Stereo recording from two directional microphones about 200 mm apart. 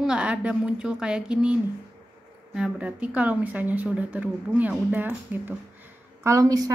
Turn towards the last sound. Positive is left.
turn(degrees=-15)  # may be behind; listen again after turning